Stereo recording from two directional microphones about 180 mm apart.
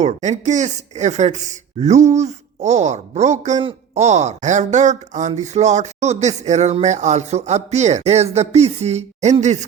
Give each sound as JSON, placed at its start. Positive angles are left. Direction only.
{"t": 0.0, "sound": "speech", "side_deg": -40}